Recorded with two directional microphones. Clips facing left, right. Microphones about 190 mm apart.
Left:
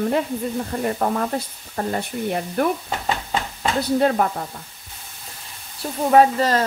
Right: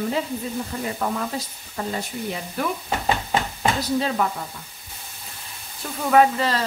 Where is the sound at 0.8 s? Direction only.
50° left (ahead or behind).